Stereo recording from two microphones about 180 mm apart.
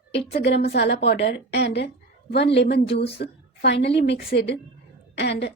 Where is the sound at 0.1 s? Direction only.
70° left (ahead or behind).